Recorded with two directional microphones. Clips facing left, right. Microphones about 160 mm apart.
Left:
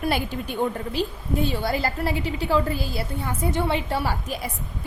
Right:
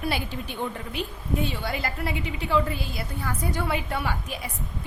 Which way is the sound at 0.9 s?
35° left (ahead or behind).